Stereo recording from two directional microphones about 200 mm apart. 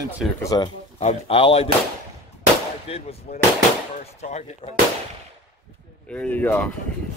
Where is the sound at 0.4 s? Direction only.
15° left (ahead or behind).